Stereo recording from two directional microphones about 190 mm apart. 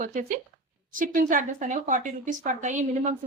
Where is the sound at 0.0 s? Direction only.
45° right (ahead or behind).